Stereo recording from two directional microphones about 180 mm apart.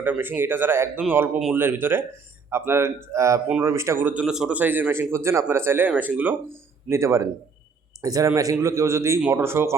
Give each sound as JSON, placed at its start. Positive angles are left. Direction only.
{"t": 0.0, "sound": "speech", "side_deg": -10}